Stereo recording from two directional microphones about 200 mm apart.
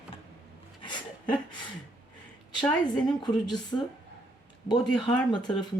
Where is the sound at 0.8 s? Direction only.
25° left (ahead or behind).